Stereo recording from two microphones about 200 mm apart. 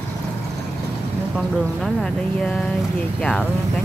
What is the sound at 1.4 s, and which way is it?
Speech, centre (ahead or behind).